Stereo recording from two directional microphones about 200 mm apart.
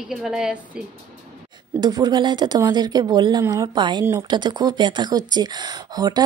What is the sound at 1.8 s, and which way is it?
Speech, 20° right (ahead or behind).